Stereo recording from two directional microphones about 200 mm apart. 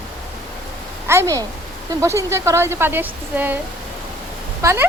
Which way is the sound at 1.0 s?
15° right (ahead or behind).